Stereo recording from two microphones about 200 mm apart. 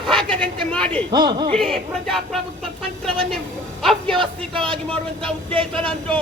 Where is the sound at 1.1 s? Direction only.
20° right (ahead or behind).